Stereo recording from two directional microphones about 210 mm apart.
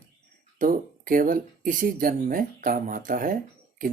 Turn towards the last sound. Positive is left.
turn(degrees=-40)  # may be behind; listen again after turning